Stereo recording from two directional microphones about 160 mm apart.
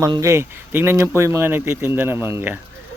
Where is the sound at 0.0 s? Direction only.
20° right (ahead or behind).